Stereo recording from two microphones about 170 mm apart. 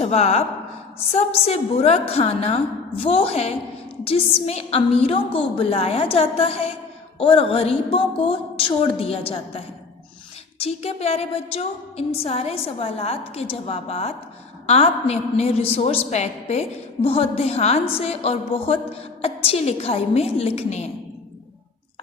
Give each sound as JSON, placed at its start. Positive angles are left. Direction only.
{"t": 0.0, "sound": "a woman's voice", "side_deg": 40}
{"t": 10.6, "sound": "a woman's voice", "side_deg": 40}